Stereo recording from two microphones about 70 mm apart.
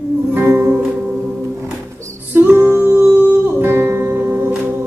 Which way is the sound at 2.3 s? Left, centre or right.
Right.